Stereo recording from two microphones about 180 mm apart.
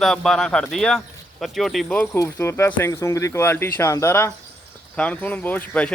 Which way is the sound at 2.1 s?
15° left (ahead or behind).